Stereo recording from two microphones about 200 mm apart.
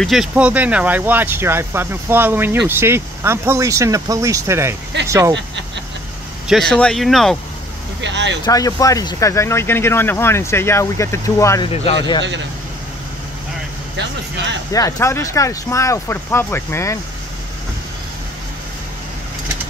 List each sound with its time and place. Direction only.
0.0 s speech: centre (ahead or behind)
6.4 s speech: centre (ahead or behind)
8.0 s speech: 65° right (ahead or behind)
8.5 s speech: 15° left (ahead or behind)
11.7 s speech: 30° left (ahead or behind)
14.7 s speech: 15° left (ahead or behind)